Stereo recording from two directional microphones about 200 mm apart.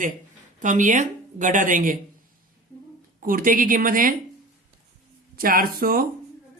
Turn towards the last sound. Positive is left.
turn(degrees=-45)  # may be behind; listen again after turning